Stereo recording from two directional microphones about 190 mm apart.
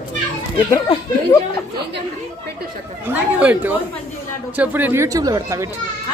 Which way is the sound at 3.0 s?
10° right (ahead or behind).